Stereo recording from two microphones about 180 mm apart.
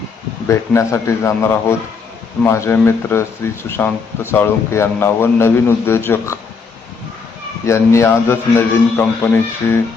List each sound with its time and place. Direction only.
0.4 s speech: 15° left (ahead or behind)
7.6 s speech: 15° left (ahead or behind)